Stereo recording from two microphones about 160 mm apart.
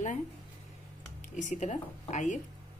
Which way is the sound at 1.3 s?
50° left (ahead or behind).